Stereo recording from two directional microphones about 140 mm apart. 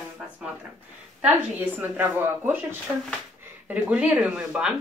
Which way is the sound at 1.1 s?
10° right (ahead or behind).